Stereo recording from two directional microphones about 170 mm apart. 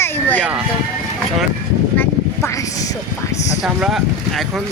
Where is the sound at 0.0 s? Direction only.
10° left (ahead or behind).